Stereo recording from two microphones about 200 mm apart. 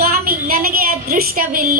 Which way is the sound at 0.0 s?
50° right (ahead or behind).